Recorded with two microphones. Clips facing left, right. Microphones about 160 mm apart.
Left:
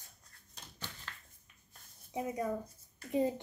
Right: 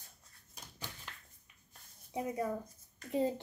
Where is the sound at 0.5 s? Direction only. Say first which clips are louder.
Even; 10° right (ahead or behind).